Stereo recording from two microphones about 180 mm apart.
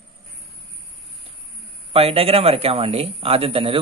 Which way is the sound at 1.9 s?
35° right (ahead or behind).